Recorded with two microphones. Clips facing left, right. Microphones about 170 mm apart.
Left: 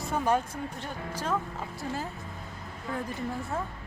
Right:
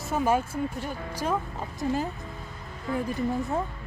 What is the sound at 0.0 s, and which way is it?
Speech, 5° right (ahead or behind).